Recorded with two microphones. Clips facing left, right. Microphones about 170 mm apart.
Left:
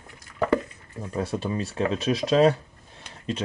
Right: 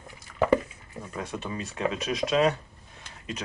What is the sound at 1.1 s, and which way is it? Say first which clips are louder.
Speech: left 7 dB; 35° left (ahead or behind).